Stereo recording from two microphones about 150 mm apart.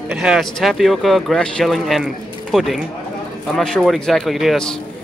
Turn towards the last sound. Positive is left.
turn(degrees=0)  # may be behind; listen again after turning